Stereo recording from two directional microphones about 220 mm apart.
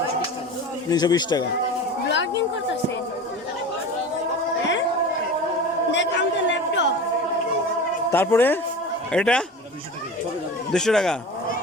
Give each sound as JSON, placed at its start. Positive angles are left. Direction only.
{"t": 0.9, "sound": "speech", "side_deg": 20}
{"t": 2.0, "sound": "a sound", "side_deg": 55}
{"t": 5.9, "sound": "a woman's voice", "side_deg": 55}
{"t": 8.1, "sound": "speech", "side_deg": 10}
{"t": 10.7, "sound": "speech", "side_deg": 0}